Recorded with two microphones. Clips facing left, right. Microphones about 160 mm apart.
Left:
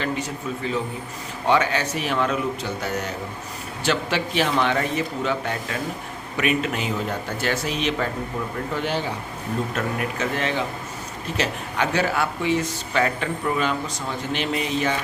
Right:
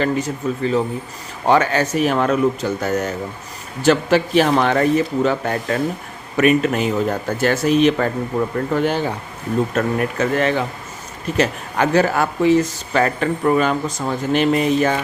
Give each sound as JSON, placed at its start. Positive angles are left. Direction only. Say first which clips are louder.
{"t": 0.0, "sound": "speech", "louder": "right 7 dB", "side_deg": -45}